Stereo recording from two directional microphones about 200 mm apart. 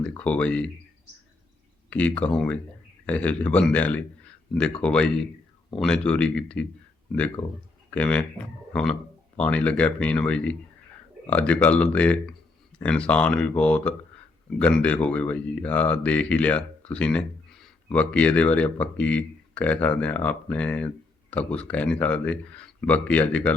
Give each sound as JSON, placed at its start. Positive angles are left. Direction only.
{"t": 0.0, "sound": "speech", "side_deg": 5}
{"t": 1.9, "sound": "speech", "side_deg": 5}